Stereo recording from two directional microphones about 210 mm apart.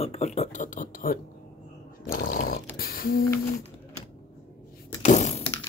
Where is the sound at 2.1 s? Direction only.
45° left (ahead or behind).